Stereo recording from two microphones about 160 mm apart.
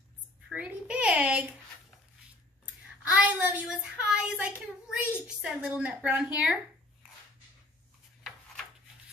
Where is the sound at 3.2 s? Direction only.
10° right (ahead or behind).